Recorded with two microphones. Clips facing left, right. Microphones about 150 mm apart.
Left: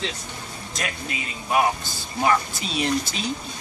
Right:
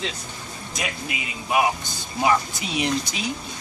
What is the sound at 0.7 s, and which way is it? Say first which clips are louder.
Speech: even; 10° right (ahead or behind).